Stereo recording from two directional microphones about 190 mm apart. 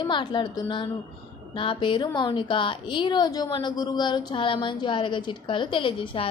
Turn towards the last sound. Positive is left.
turn(degrees=25)  # may be behind; listen again after turning